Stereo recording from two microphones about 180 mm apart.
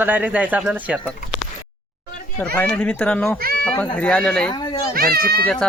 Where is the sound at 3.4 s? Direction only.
55° right (ahead or behind).